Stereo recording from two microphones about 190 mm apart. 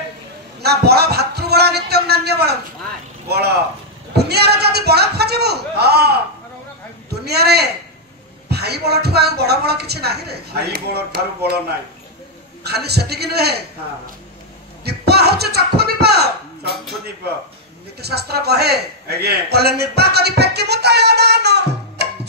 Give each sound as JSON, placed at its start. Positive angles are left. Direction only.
{"t": 0.6, "sound": "a sound", "side_deg": -60}
{"t": 3.3, "sound": "a man's voice", "side_deg": -60}
{"t": 12.6, "sound": "a man's voice", "side_deg": -60}
{"t": 14.9, "sound": "speech", "side_deg": -60}
{"t": 18.0, "sound": "a man's voice", "side_deg": -55}